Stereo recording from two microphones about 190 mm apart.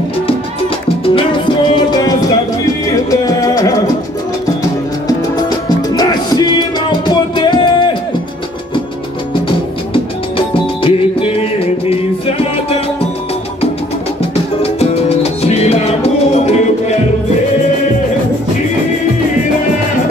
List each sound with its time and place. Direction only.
1.0 s salsa music: 25° left (ahead or behind)
3.1 s music: 20° left (ahead or behind)
5.8 s music: 20° left (ahead or behind)
9.9 s music: 25° left (ahead or behind)
14.6 s music: 30° left (ahead or behind)